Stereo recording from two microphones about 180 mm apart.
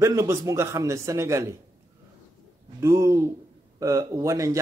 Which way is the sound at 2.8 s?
15° right (ahead or behind).